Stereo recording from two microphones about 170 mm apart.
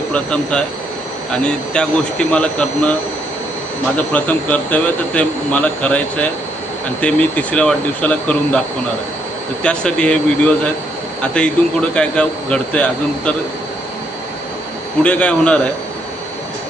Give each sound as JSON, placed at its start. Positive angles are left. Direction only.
{"t": 0.1, "sound": "speech", "side_deg": 5}
{"t": 3.9, "sound": "speech", "side_deg": 10}
{"t": 9.6, "sound": "speech", "side_deg": 5}
{"t": 15.0, "sound": "speech", "side_deg": 5}